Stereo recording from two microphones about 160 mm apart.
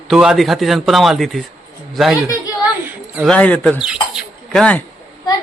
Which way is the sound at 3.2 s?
10° left (ahead or behind).